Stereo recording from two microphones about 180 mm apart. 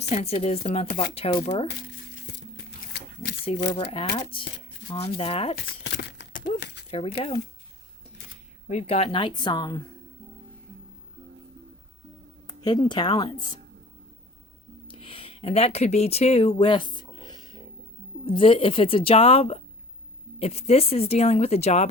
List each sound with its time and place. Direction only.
0.1 s speech: 35° left (ahead or behind)
3.4 s speech: 35° left (ahead or behind)
5.5 s crumpling: 65° left (ahead or behind)
6.5 s a sound: 30° left (ahead or behind)
8.6 s speech: 35° left (ahead or behind)
12.5 s speech: 25° left (ahead or behind)
14.8 s a sound: 30° left (ahead or behind)
18.3 s speech: 30° left (ahead or behind)